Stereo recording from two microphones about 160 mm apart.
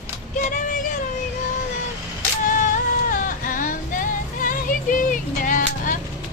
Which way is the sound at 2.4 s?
55° left (ahead or behind).